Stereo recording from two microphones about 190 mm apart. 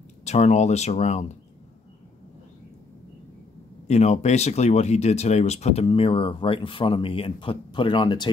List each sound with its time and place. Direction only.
0.2 s speech: 35° left (ahead or behind)
3.8 s speech: 35° left (ahead or behind)